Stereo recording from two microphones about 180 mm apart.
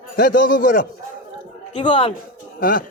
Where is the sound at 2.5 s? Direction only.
55° left (ahead or behind).